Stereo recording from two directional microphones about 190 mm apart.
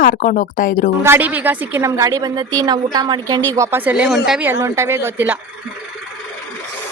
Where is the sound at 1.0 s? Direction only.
10° right (ahead or behind).